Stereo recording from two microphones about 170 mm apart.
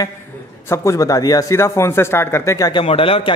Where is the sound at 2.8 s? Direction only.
35° left (ahead or behind).